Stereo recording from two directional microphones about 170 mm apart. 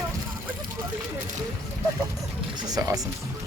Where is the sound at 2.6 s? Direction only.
20° right (ahead or behind).